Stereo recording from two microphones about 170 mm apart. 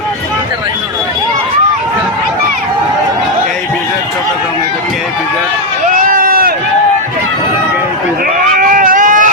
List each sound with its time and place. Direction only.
5.9 s run: 55° right (ahead or behind)
8.5 s baby cry: 55° right (ahead or behind)